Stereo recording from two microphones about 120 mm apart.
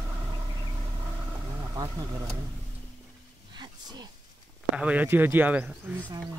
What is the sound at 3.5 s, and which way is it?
Wild animals, 35° right (ahead or behind).